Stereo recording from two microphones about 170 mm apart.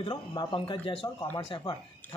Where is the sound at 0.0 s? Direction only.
25° left (ahead or behind).